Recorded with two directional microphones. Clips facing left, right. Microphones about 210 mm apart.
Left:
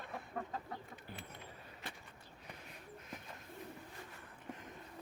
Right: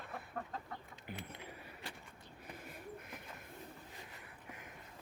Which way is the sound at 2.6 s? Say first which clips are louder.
Right 3 dB; 50° right (ahead or behind).